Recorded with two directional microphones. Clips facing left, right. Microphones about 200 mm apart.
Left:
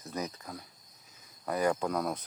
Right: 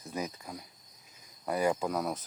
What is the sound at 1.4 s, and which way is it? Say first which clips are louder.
Cricket: even; 10° right (ahead or behind).